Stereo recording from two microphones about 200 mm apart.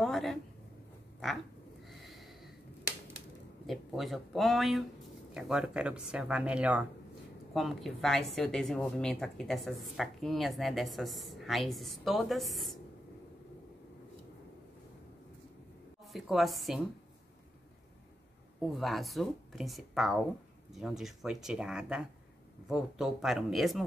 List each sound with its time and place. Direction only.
0.0 s a sound: centre (ahead or behind)
1.9 s snort: centre (ahead or behind)
3.6 s a woman's voice: centre (ahead or behind)
16.1 s a woman's voice: centre (ahead or behind)
18.8 s a woman's voice: centre (ahead or behind)